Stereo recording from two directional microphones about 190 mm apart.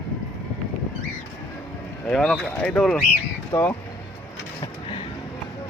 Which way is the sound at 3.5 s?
25° left (ahead or behind).